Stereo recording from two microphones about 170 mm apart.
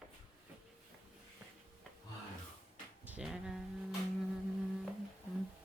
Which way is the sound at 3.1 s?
5° right (ahead or behind).